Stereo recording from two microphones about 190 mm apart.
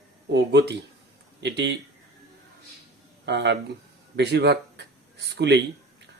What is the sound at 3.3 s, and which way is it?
Speech, 65° right (ahead or behind).